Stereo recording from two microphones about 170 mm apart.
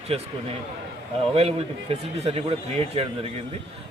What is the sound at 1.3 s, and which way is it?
A man's voice, 35° right (ahead or behind).